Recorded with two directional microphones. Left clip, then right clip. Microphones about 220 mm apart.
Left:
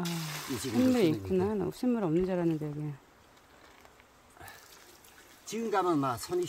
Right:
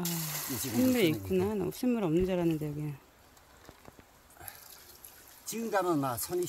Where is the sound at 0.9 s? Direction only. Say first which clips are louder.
Even; 10° left (ahead or behind).